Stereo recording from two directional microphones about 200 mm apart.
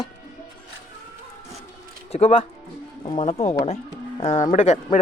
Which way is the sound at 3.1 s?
30° left (ahead or behind).